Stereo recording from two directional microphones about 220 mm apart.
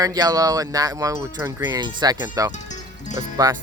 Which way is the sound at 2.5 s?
35° left (ahead or behind).